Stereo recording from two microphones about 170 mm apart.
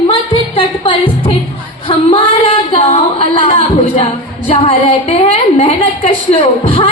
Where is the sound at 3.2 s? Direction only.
30° left (ahead or behind).